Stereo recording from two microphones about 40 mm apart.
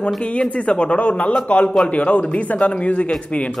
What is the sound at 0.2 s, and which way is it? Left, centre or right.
A man's voice, left.